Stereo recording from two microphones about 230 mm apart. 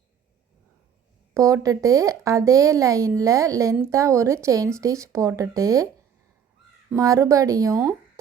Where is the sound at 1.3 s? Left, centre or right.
Centre.